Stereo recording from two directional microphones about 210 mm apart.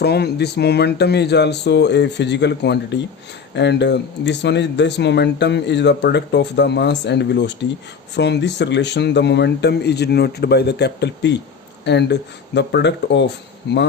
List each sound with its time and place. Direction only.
0.0 s speech: 50° left (ahead or behind)